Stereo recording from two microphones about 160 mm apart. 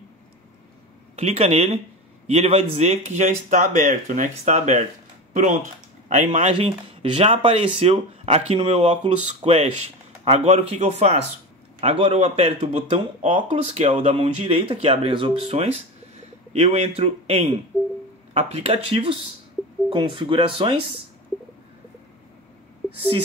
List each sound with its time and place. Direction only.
1.1 s speech: 40° right (ahead or behind)